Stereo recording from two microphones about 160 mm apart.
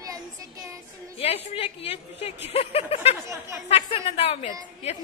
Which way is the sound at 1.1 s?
35° left (ahead or behind).